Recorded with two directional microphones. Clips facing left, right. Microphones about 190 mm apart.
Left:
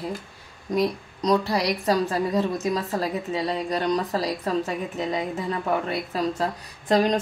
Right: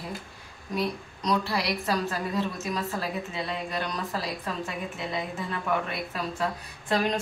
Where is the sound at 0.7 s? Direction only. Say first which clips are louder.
Left 6 dB; 35° left (ahead or behind).